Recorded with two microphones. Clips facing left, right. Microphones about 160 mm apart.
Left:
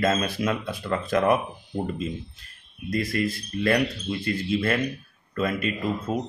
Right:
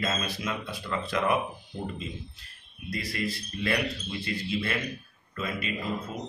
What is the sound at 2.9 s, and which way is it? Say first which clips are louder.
A man's voice: left 7 dB; 50° left (ahead or behind).